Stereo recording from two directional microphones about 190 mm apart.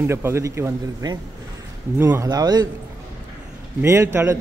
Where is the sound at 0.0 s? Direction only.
15° right (ahead or behind).